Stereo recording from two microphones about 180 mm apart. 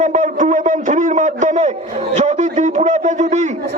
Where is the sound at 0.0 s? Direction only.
40° right (ahead or behind).